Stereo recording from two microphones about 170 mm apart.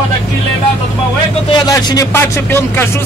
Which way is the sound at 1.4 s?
25° left (ahead or behind).